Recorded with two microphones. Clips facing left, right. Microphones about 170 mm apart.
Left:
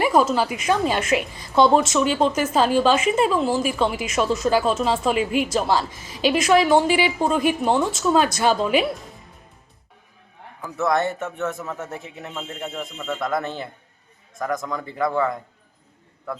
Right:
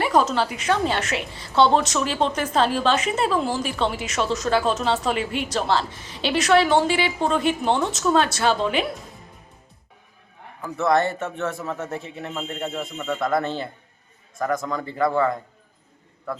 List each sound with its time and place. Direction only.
0.0 s a woman's voice: 10° left (ahead or behind)
10.6 s a man's voice: centre (ahead or behind)
11.9 s a woman's voice: 15° left (ahead or behind)
12.3 s a man's voice: centre (ahead or behind)
13.4 s a woman's voice: 15° left (ahead or behind)
14.3 s a man's voice: centre (ahead or behind)